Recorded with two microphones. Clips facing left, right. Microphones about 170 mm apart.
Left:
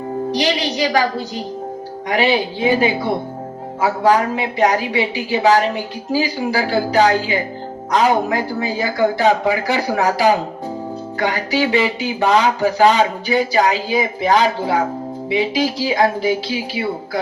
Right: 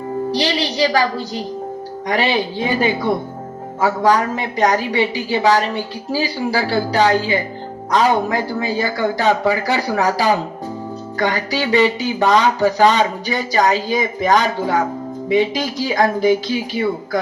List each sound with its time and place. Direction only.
0.3 s a woman's voice: 35° right (ahead or behind)